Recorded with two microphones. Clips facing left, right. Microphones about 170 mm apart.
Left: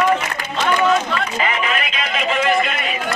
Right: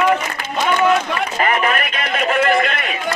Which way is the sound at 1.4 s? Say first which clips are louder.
Right 7 dB; 50° right (ahead or behind).